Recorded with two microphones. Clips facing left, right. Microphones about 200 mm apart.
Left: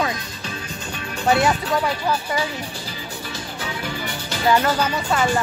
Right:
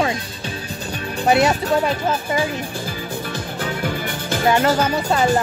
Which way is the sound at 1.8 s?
20° right (ahead or behind).